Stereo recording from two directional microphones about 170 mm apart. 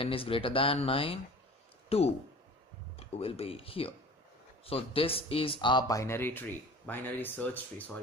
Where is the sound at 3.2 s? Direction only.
35° left (ahead or behind).